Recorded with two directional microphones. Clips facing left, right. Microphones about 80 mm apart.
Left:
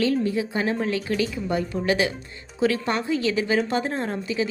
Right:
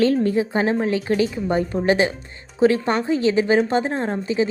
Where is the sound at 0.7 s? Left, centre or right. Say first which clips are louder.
Right 5 dB; right.